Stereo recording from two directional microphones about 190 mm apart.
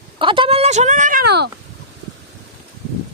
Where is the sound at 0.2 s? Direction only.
25° right (ahead or behind).